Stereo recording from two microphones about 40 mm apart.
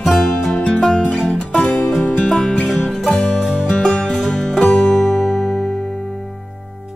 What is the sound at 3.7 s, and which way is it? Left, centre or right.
Music, left.